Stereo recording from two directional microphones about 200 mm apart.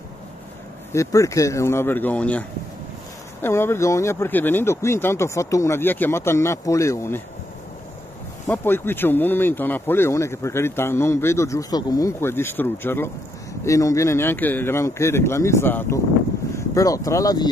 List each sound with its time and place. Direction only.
0.9 s speech: 15° left (ahead or behind)
3.4 s speech: 10° left (ahead or behind)
8.5 s speech: 10° left (ahead or behind)